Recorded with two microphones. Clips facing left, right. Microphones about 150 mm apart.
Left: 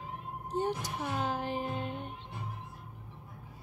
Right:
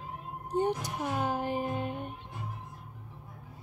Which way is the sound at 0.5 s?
15° right (ahead or behind).